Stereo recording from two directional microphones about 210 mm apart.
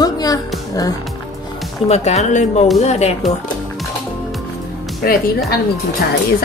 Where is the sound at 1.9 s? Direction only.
30° left (ahead or behind).